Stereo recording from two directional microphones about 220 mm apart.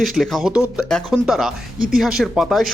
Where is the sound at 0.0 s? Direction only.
Centre (ahead or behind).